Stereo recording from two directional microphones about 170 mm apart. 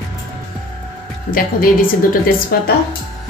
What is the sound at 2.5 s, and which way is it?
Speech, 60° left (ahead or behind).